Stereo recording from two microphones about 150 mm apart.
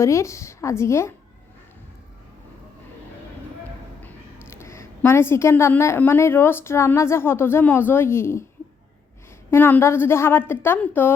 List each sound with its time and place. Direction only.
0.0 s a woman's voice: 20° left (ahead or behind)
4.0 s a woman's voice: 15° left (ahead or behind)
9.5 s a woman's voice: 15° left (ahead or behind)